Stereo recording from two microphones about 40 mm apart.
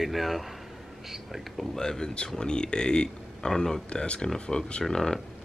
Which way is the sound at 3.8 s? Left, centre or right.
Left.